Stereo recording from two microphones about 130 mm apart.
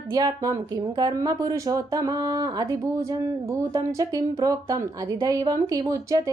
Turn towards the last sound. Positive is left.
turn(degrees=-25)  # may be behind; listen again after turning